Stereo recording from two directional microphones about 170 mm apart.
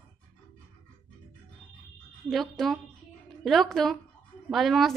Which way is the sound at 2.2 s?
Centre (ahead or behind).